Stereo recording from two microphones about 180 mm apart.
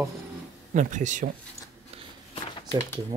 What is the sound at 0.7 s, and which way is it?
Speech, 45° right (ahead or behind).